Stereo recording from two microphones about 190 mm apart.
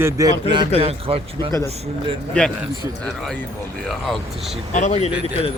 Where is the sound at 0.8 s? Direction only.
30° right (ahead or behind).